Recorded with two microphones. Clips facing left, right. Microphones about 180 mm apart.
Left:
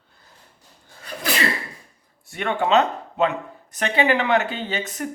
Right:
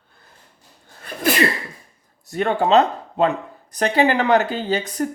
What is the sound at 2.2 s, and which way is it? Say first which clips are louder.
Speech: right 4 dB; 40° right (ahead or behind).